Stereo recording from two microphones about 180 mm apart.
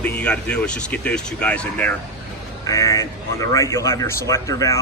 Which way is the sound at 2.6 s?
20° left (ahead or behind).